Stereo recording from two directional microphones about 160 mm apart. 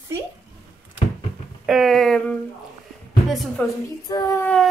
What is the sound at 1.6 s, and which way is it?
Speech, centre (ahead or behind).